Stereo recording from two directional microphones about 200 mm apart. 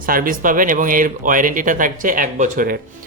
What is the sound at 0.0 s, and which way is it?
Speech, 45° right (ahead or behind).